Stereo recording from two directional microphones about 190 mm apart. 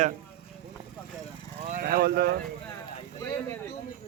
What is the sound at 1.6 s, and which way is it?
Speech, 45° right (ahead or behind).